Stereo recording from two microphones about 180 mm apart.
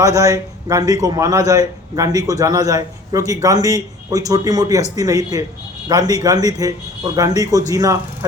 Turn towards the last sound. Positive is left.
turn(degrees=-20)  # may be behind; listen again after turning